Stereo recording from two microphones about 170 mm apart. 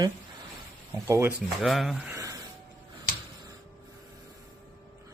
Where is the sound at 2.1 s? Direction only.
20° right (ahead or behind).